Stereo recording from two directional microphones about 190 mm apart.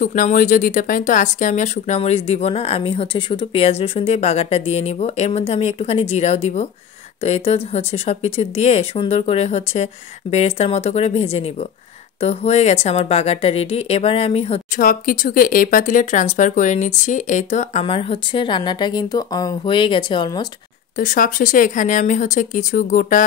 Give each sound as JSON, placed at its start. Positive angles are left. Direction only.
{"t": 0.0, "sound": "speech", "side_deg": 45}
{"t": 14.8, "sound": "speech", "side_deg": 45}
{"t": 21.0, "sound": "speech", "side_deg": 45}